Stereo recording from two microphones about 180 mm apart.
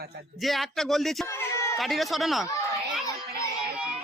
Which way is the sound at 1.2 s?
15° left (ahead or behind).